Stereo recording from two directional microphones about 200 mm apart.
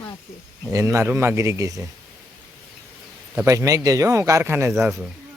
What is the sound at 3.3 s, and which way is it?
A man's voice, 15° right (ahead or behind).